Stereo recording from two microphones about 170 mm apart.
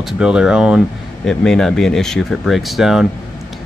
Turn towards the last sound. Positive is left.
turn(degrees=0)  # may be behind; listen again after turning